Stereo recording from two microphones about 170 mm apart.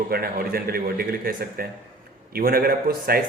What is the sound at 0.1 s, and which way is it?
A man's voice, 60° right (ahead or behind).